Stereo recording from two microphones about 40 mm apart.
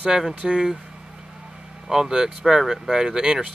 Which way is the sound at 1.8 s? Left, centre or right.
Centre.